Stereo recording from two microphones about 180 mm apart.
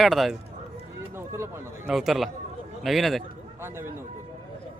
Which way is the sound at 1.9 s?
Centre (ahead or behind).